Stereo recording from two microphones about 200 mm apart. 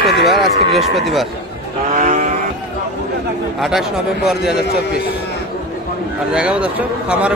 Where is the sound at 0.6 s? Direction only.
30° right (ahead or behind).